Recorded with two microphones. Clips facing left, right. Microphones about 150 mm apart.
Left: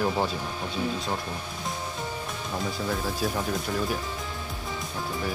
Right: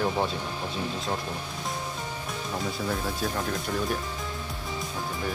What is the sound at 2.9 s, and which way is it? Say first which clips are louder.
Speech: left 2 dB; centre (ahead or behind).